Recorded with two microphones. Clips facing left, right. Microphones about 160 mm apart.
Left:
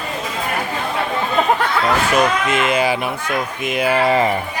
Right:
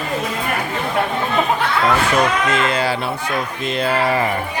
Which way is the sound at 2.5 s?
15° left (ahead or behind).